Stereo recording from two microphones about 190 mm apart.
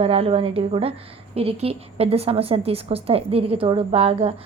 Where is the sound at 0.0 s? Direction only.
30° right (ahead or behind).